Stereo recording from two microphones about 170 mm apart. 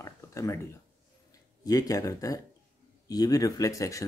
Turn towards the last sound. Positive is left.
turn(degrees=20)  # may be behind; listen again after turning